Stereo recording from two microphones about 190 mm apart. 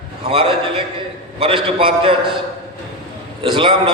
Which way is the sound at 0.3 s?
30° right (ahead or behind).